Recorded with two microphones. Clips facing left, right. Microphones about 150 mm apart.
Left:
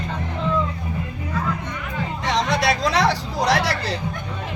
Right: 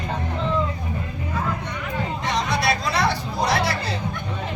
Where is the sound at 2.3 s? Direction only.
90° left.